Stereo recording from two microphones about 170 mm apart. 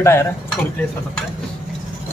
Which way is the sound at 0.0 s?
15° left (ahead or behind).